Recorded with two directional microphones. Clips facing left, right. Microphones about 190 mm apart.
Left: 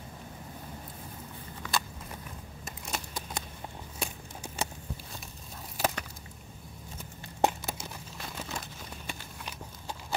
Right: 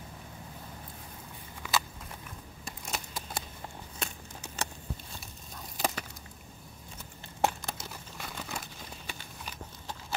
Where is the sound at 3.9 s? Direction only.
10° left (ahead or behind).